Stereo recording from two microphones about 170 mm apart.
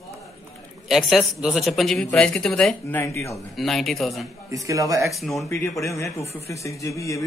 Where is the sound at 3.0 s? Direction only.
15° left (ahead or behind).